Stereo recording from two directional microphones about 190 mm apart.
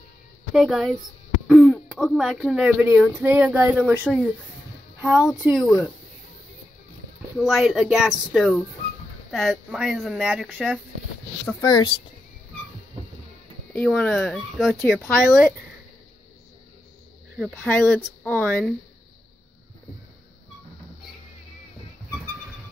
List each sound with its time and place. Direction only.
0.5 s speech: centre (ahead or behind)
5.6 s speech: 20° left (ahead or behind)
7.3 s speech: centre (ahead or behind)
11.6 s speech: 20° left (ahead or behind)
13.7 s speech: 5° left (ahead or behind)
17.5 s speech: 10° left (ahead or behind)